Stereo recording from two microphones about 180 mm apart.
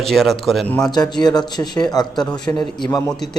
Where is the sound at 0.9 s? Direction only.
20° left (ahead or behind).